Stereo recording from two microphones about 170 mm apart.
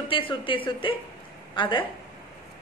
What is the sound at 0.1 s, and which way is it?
A woman's voice, 30° left (ahead or behind).